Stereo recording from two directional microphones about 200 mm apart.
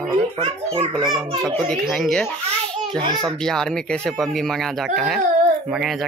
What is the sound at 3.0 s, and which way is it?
Speech, 20° right (ahead or behind).